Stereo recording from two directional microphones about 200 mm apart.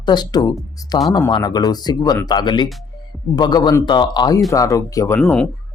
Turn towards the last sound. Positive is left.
turn(degrees=5)  # may be behind; listen again after turning